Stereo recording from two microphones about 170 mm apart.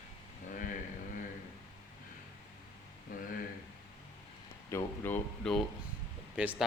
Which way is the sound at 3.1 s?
55° left (ahead or behind).